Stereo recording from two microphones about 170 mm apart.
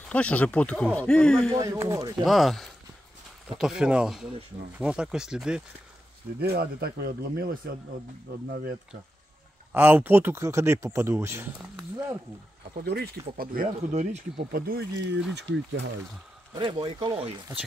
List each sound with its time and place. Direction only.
0.1 s speech: 10° left (ahead or behind)
1.5 s speech: 20° right (ahead or behind)
2.2 s speech: centre (ahead or behind)
6.4 s speech: 65° right (ahead or behind)
9.7 s speech: 10° right (ahead or behind)
12.7 s speech: 70° right (ahead or behind)
13.4 s speech: 60° right (ahead or behind)
13.7 s speech: 40° right (ahead or behind)
14.5 s speech: 65° right (ahead or behind)
16.5 s speech: 25° right (ahead or behind)